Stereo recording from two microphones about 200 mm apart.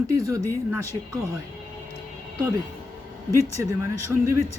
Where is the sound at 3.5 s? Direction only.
15° right (ahead or behind).